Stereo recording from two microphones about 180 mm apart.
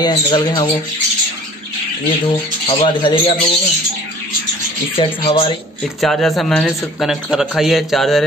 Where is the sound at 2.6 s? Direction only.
30° left (ahead or behind).